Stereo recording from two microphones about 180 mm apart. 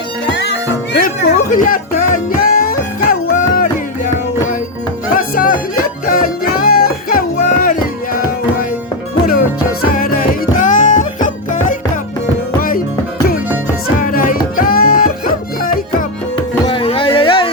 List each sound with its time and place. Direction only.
0.3 s music: 75° left (ahead or behind)
1.0 s music: 50° left (ahead or behind)
5.1 s music: 50° left (ahead or behind)
9.9 s music: 50° left (ahead or behind)
14.0 s music: 50° left (ahead or behind)
16.6 s a sound: 30° left (ahead or behind)